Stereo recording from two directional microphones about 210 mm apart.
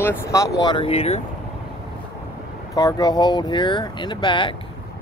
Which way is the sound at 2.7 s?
20° left (ahead or behind).